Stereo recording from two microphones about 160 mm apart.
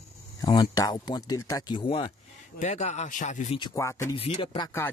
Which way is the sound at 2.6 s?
45° left (ahead or behind).